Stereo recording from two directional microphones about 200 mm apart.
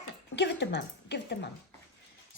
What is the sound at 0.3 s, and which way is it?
Speech, 60° left (ahead or behind).